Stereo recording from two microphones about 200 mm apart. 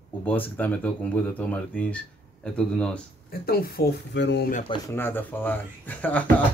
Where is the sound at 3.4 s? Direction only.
50° left (ahead or behind).